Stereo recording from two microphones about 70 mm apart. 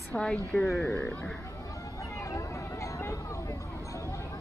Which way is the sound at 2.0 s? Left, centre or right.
Left.